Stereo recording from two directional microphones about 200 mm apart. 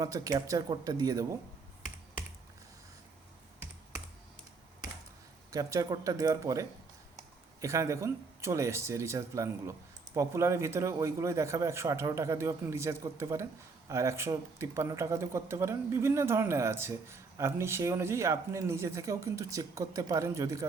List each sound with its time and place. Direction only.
0.0 s speech: 20° right (ahead or behind)
5.5 s speech: 15° right (ahead or behind)